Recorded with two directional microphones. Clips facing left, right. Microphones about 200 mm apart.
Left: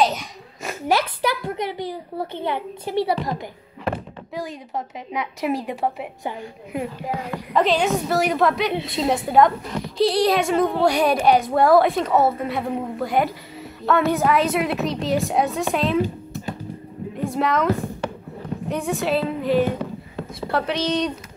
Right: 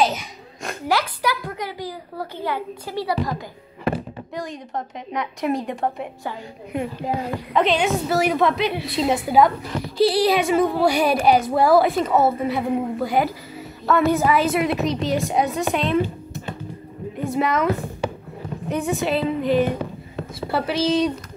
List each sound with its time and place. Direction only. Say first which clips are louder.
0.0 s a sound: even; centre (ahead or behind)
0.8 s a child's voice: left 1 dB; 25° left (ahead or behind)
4.3 s speech: left 1 dB; 5° left (ahead or behind)
18.7 s a woman's voice: right 1 dB; centre (ahead or behind)